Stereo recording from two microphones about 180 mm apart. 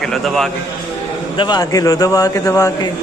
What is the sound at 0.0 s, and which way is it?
Speech, centre (ahead or behind).